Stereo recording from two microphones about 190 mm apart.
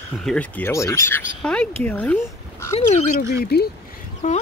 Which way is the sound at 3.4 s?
55° left (ahead or behind).